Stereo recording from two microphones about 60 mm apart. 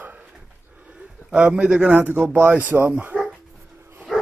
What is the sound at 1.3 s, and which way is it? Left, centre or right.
Speech, centre.